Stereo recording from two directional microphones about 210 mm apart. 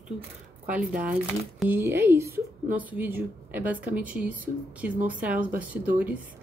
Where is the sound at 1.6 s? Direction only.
10° right (ahead or behind).